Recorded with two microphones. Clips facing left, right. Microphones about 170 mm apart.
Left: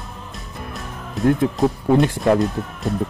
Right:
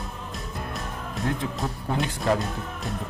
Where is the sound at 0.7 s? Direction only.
Centre (ahead or behind).